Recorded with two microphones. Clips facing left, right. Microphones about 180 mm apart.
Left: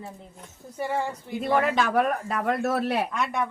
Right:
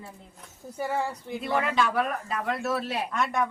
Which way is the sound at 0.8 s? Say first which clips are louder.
Left 1 dB; 5° right (ahead or behind).